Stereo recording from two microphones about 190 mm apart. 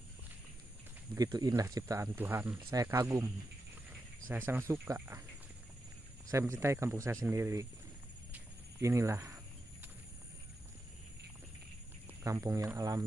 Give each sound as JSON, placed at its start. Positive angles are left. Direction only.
{"t": 1.1, "sound": "speech", "side_deg": -20}
{"t": 4.3, "sound": "speech", "side_deg": -10}
{"t": 6.6, "sound": "speech", "side_deg": -15}
{"t": 8.3, "sound": "a sound", "side_deg": -15}
{"t": 12.2, "sound": "speech", "side_deg": -15}